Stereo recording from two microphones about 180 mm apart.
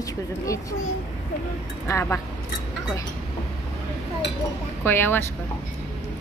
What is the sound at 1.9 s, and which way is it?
Speech, 15° left (ahead or behind).